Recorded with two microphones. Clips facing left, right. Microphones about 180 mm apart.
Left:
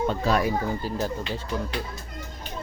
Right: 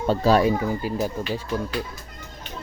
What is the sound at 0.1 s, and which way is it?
Speech, 35° right (ahead or behind).